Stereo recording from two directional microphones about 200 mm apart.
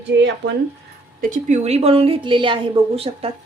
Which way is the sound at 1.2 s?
40° right (ahead or behind).